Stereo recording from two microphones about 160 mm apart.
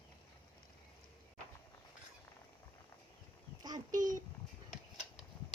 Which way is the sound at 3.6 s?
25° right (ahead or behind).